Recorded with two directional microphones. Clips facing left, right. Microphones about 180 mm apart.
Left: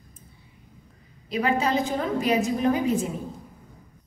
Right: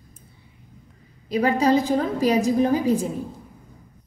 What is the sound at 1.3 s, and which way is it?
A woman's voice, 35° right (ahead or behind).